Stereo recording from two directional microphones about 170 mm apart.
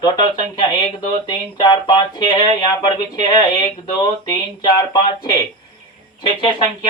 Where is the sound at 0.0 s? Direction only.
25° left (ahead or behind).